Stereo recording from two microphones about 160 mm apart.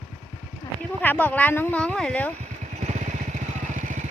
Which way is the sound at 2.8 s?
50° right (ahead or behind).